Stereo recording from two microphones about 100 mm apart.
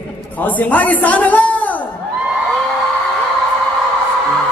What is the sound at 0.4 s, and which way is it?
A man's voice, 15° left (ahead or behind).